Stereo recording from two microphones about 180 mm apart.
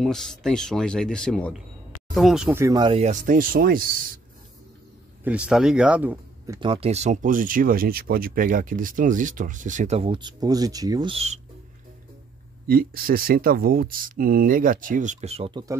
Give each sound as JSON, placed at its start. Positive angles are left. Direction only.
{"t": 0.0, "sound": "speech", "side_deg": 5}
{"t": 2.6, "sound": "speech", "side_deg": -20}
{"t": 2.9, "sound": "speech", "side_deg": -40}
{"t": 5.2, "sound": "speech", "side_deg": -5}
{"t": 6.7, "sound": "speech", "side_deg": -35}
{"t": 12.6, "sound": "speech", "side_deg": -55}